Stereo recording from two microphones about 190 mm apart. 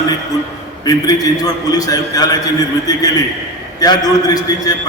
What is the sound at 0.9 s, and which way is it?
A man's voice, 20° left (ahead or behind).